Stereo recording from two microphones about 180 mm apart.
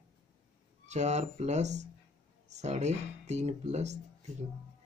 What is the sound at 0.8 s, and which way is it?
A man's voice, 40° right (ahead or behind).